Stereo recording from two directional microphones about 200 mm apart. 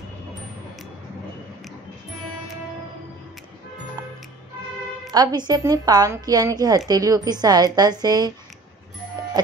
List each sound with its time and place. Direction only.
5.1 s a woman's voice: 20° right (ahead or behind)